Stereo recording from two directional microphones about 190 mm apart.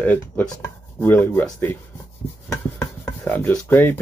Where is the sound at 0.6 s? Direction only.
10° left (ahead or behind).